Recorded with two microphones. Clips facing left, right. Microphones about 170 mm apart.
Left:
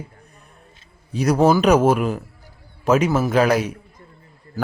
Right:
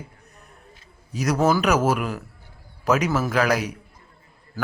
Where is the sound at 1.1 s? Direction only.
30° left (ahead or behind).